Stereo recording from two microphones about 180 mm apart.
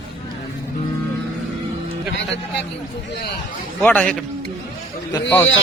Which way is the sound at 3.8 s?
5° left (ahead or behind).